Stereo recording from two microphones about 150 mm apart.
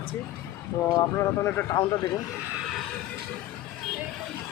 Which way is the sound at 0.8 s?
20° left (ahead or behind).